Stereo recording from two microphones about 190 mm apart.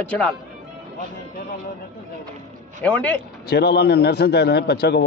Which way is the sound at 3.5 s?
60° left (ahead or behind).